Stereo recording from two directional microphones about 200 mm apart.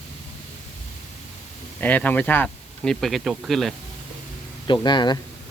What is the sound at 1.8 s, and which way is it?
Speech, 10° left (ahead or behind).